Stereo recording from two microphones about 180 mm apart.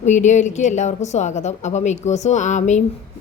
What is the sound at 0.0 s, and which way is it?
A woman's voice, 40° left (ahead or behind).